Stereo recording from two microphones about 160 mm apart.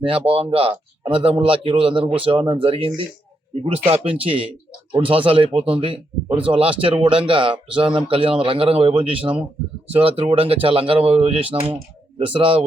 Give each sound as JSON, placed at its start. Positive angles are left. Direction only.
{"t": 0.0, "sound": "speech", "side_deg": -35}